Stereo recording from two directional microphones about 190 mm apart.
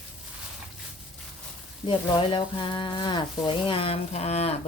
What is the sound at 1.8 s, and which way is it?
Sizzle, 25° left (ahead or behind).